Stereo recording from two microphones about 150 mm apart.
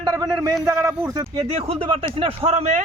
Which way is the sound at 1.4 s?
45° right (ahead or behind).